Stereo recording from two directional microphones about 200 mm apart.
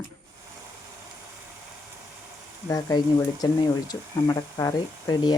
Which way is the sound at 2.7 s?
15° left (ahead or behind).